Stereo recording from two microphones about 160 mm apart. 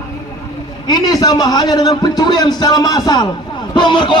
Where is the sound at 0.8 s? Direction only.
25° left (ahead or behind).